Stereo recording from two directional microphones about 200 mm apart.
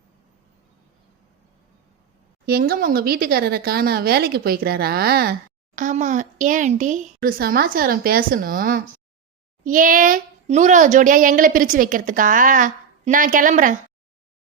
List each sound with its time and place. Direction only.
2.5 s speech: 45° right (ahead or behind)